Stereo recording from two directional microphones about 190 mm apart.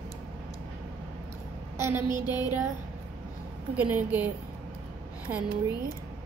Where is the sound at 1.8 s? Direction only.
15° right (ahead or behind).